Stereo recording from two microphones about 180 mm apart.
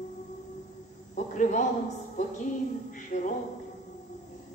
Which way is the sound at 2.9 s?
45° left (ahead or behind).